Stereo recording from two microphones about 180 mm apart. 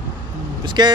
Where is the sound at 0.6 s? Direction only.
25° right (ahead or behind).